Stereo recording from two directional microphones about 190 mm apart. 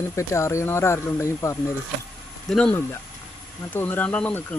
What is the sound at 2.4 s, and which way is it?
Speech, 5° left (ahead or behind).